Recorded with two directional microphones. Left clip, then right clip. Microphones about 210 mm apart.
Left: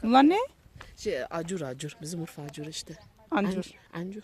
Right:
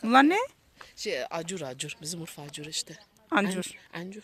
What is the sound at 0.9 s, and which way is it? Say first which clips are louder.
Speech: even; 50° left (ahead or behind).